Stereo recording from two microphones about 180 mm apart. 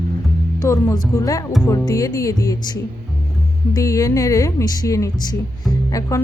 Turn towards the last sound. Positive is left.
turn(degrees=15)  # may be behind; listen again after turning